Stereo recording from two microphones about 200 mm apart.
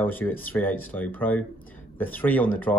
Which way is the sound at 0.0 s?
10° left (ahead or behind).